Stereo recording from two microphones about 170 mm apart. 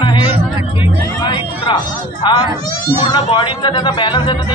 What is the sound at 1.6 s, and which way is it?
Speech, 30° left (ahead or behind).